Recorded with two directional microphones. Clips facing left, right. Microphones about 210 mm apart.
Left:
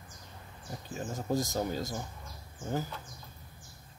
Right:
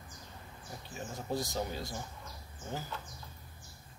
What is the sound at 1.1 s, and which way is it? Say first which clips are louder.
Speech: left 4 dB; 45° left (ahead or behind).